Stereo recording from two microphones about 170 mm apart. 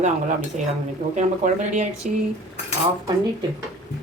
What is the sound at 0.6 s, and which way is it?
Speech, 45° right (ahead or behind).